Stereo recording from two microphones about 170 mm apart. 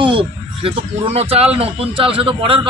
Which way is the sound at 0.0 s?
30° right (ahead or behind).